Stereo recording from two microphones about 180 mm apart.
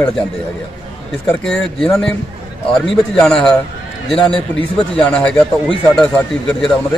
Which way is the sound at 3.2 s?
5° left (ahead or behind).